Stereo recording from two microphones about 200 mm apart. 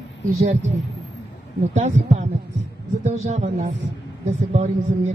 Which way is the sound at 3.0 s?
35° right (ahead or behind).